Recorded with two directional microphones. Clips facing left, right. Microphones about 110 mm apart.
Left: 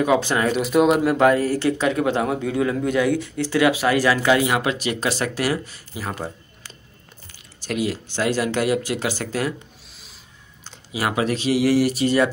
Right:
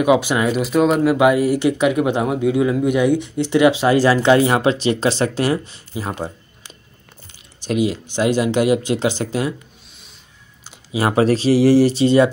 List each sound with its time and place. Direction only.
0.0 s speech: 10° right (ahead or behind)
0.6 s speech: centre (ahead or behind)
1.1 s speech: 10° right (ahead or behind)
10.9 s speech: 30° right (ahead or behind)